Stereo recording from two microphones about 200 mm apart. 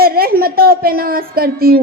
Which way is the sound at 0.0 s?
50° right (ahead or behind).